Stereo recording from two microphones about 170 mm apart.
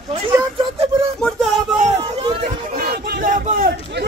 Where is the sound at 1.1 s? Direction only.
Centre (ahead or behind).